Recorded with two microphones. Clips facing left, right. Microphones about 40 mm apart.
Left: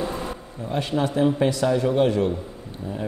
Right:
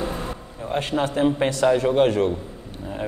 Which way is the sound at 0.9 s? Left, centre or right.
Centre.